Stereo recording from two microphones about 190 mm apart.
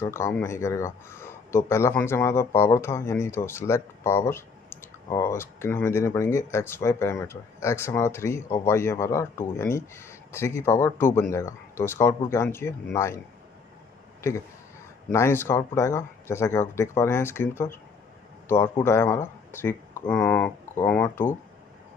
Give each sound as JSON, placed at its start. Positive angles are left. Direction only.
{"t": 0.0, "sound": "speech", "side_deg": 15}
{"t": 15.0, "sound": "speech", "side_deg": 15}
{"t": 18.8, "sound": "speech", "side_deg": 15}